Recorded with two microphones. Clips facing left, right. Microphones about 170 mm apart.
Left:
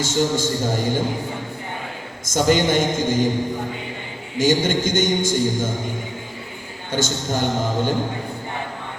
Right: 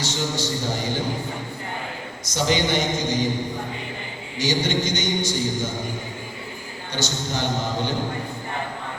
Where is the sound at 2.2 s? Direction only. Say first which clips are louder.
Left 5 dB; 50° left (ahead or behind).